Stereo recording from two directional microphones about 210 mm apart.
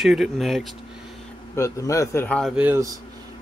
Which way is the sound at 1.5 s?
15° left (ahead or behind).